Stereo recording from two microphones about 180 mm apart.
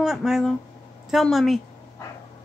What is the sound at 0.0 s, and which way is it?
A woman's voice, 5° right (ahead or behind).